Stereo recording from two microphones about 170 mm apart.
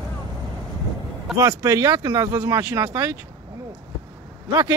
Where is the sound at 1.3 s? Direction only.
20° right (ahead or behind).